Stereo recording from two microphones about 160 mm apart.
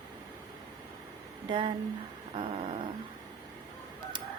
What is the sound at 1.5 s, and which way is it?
A woman's voice, 30° right (ahead or behind).